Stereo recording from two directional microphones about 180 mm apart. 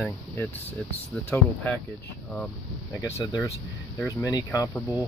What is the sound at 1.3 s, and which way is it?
Speech, 10° left (ahead or behind).